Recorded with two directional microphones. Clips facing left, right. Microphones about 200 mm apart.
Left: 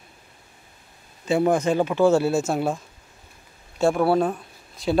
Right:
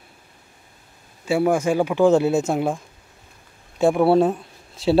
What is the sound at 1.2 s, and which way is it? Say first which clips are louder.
Speech: right 1 dB; 10° right (ahead or behind).